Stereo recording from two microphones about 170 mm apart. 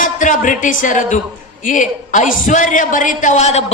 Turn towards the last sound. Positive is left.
turn(degrees=40)  # may be behind; listen again after turning